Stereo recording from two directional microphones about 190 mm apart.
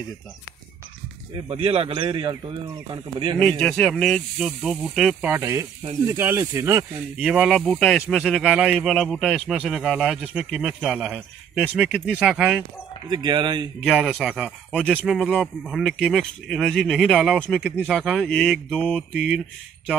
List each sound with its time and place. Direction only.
1.3 s speech: 30° right (ahead or behind)
3.3 s speech: 5° left (ahead or behind)
13.1 s speech: 20° right (ahead or behind)
13.8 s speech: centre (ahead or behind)